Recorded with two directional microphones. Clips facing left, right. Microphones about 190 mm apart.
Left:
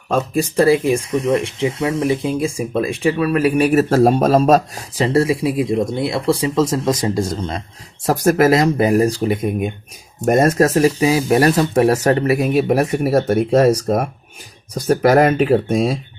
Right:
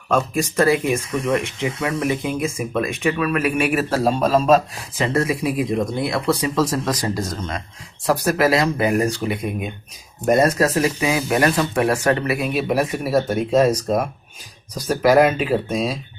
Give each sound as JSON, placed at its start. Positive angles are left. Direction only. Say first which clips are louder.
{"t": 0.2, "sound": "speech", "louder": "left 7 dB", "side_deg": 30}
{"t": 8.0, "sound": "speech", "louder": "left 4 dB", "side_deg": 45}
{"t": 14.8, "sound": "speech", "louder": "left 2 dB", "side_deg": 50}